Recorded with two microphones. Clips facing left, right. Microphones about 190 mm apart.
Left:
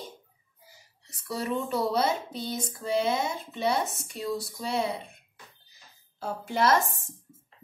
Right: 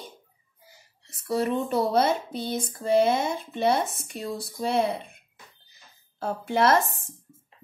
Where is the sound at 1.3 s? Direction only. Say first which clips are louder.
Right 5 dB; 55° right (ahead or behind).